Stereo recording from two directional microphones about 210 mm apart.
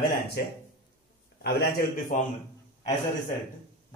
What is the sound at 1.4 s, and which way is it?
Speech, 45° left (ahead or behind).